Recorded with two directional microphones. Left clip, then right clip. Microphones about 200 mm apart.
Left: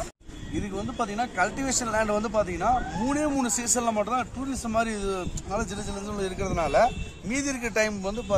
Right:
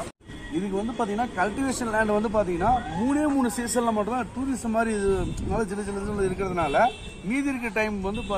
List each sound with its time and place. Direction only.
1.0 s speech: 10° left (ahead or behind)
1.7 s speech: 25° left (ahead or behind)
3.9 s speech: 20° left (ahead or behind)
4.7 s speech: 30° left (ahead or behind)
5.1 s speech: 15° left (ahead or behind)
6.2 s a man's voice: 50° left (ahead or behind); by 8.4 s 70° left (ahead or behind)